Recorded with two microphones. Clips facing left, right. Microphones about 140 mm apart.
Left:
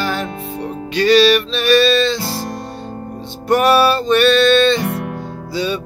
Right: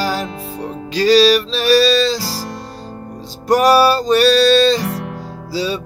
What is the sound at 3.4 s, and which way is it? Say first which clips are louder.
Music: right 1 dB; 35° right (ahead or behind).